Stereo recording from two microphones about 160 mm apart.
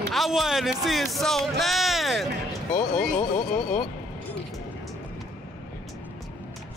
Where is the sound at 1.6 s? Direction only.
Centre (ahead or behind).